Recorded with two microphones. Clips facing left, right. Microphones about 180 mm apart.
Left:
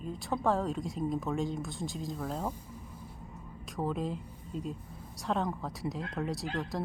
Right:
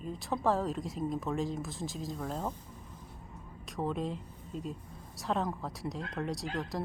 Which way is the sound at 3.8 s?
Centre (ahead or behind).